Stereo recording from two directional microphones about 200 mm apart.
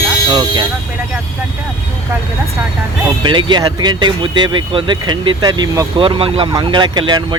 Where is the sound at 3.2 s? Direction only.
25° right (ahead or behind).